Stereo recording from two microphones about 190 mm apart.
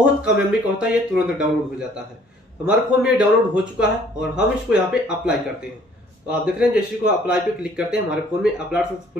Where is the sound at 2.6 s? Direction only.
5° right (ahead or behind).